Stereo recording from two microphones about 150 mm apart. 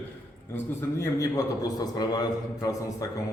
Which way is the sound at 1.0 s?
20° left (ahead or behind).